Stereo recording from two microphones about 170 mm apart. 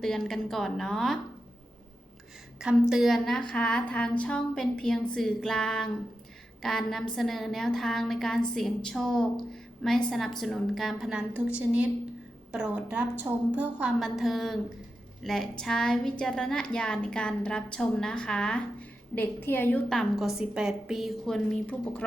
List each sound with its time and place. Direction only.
0.0 s a woman's voice: centre (ahead or behind)
2.6 s a woman's voice: 5° right (ahead or behind)
13.3 s a woman's voice: 20° right (ahead or behind)
13.6 s a woman's voice: 5° right (ahead or behind)